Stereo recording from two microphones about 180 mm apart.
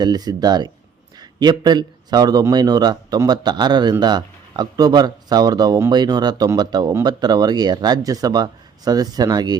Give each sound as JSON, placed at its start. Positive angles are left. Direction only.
{"t": 0.0, "sound": "speech", "side_deg": -20}